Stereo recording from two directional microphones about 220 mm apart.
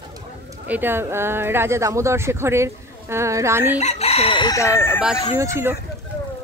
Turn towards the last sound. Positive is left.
turn(degrees=-10)  # may be behind; listen again after turning